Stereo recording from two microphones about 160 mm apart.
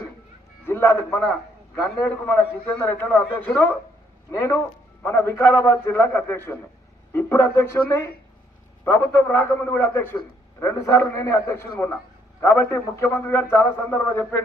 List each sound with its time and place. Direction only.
0.6 s a man's voice: 15° left (ahead or behind)